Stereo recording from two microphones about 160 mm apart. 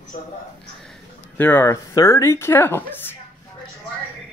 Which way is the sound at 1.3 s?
15° left (ahead or behind).